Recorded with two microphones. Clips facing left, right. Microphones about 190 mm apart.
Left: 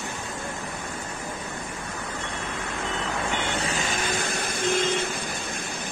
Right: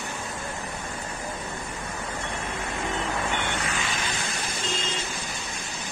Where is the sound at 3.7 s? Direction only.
55° left (ahead or behind).